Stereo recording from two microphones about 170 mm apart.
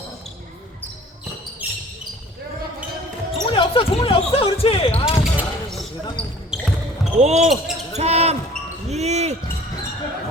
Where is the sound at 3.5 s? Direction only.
35° left (ahead or behind).